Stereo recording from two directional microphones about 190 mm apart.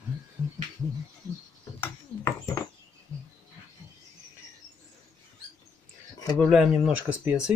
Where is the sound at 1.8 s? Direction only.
15° left (ahead or behind).